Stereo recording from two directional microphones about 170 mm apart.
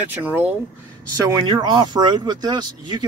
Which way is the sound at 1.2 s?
25° right (ahead or behind).